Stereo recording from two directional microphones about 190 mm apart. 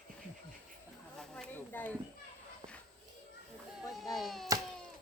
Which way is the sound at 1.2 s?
5° left (ahead or behind).